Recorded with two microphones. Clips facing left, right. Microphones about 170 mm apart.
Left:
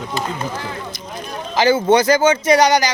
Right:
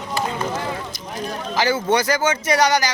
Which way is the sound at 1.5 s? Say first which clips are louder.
Left 6 dB; 25° left (ahead or behind).